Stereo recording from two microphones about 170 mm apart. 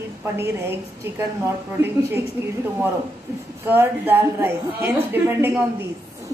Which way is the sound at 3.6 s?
10° right (ahead or behind).